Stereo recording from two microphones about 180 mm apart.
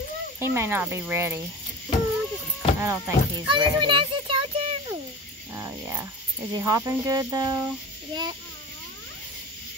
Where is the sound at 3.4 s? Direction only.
25° right (ahead or behind).